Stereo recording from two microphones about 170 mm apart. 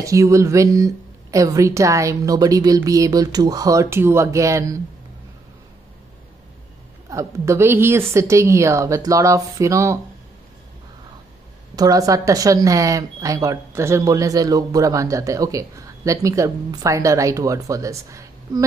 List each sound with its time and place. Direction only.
0.0 s speech: 20° right (ahead or behind)
7.1 s a woman's voice: 15° right (ahead or behind)
11.7 s speech: 20° right (ahead or behind)